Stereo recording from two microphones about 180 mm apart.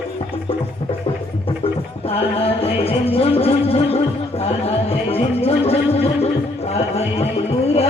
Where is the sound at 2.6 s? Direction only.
35° left (ahead or behind).